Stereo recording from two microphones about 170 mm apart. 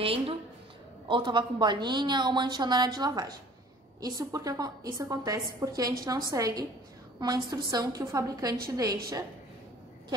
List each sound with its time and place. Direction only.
0.0 s a woman's voice: 35° right (ahead or behind)